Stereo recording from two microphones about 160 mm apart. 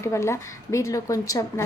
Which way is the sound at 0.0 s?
15° left (ahead or behind).